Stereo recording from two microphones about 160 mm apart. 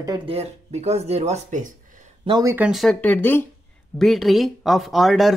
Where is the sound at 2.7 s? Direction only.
Centre (ahead or behind).